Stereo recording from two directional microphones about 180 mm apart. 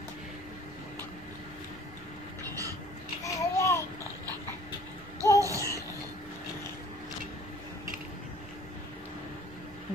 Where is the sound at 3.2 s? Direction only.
15° left (ahead or behind).